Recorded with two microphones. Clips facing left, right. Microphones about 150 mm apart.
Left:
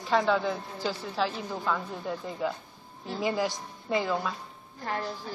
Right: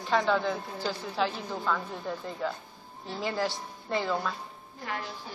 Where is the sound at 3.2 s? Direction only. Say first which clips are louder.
Left 2 dB; 15° left (ahead or behind).